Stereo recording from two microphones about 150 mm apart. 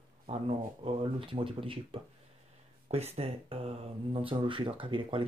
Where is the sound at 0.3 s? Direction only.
35° right (ahead or behind).